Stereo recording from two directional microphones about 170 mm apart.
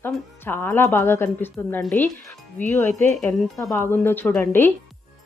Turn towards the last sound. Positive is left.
turn(degrees=15)  # may be behind; listen again after turning